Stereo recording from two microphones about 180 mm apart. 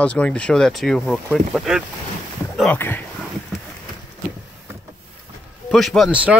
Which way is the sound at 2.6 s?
10° left (ahead or behind).